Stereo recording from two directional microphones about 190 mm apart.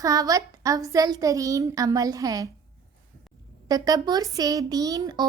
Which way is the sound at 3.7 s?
20° right (ahead or behind).